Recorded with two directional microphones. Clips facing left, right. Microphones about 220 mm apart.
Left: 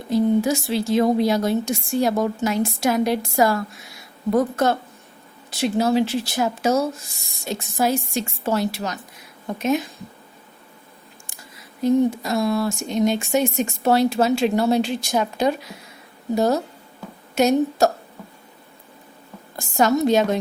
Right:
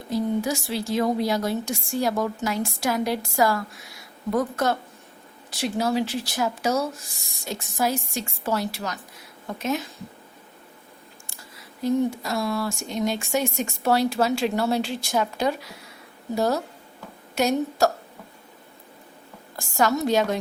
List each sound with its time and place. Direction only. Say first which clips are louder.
0.1 s a woman's voice: left 6 dB; 25° left (ahead or behind)
11.8 s speech: left 5 dB; 20° left (ahead or behind)
19.5 s speech: left 4 dB; 20° left (ahead or behind)